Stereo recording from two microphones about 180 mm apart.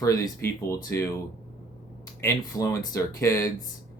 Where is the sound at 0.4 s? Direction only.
15° left (ahead or behind).